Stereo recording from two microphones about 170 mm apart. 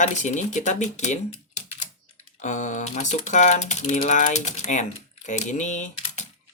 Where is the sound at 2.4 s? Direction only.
45° left (ahead or behind).